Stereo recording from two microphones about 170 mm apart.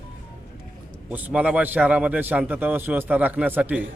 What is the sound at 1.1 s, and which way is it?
A man's voice, 10° right (ahead or behind).